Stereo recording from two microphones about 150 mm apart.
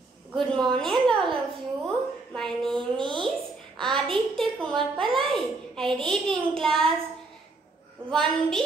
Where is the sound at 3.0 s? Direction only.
35° right (ahead or behind).